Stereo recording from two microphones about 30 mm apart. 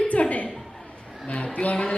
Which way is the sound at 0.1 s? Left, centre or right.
Left.